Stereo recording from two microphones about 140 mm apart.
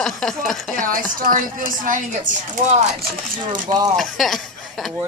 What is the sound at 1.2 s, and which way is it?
Speech, 80° right.